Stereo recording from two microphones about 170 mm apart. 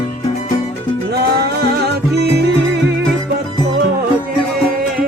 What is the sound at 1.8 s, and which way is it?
Music, 75° right (ahead or behind).